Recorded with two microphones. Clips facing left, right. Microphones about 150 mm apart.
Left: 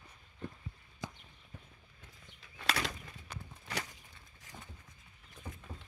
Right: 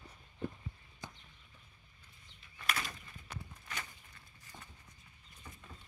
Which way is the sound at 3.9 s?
90° left.